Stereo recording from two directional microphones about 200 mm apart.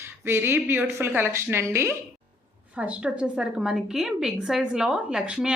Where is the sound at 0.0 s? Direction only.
10° right (ahead or behind).